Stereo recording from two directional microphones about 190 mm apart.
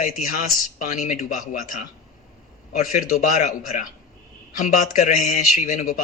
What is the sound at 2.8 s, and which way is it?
Speech, 45° left (ahead or behind).